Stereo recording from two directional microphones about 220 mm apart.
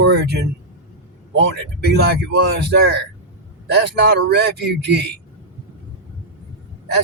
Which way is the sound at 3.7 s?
50° right (ahead or behind).